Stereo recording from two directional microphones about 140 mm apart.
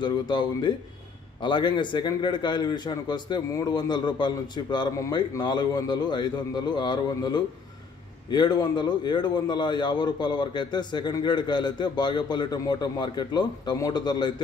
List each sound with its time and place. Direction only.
0.0 s a man's voice: 30° left (ahead or behind)